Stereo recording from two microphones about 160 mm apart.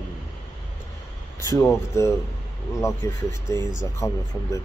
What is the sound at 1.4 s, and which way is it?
Speech, 20° left (ahead or behind).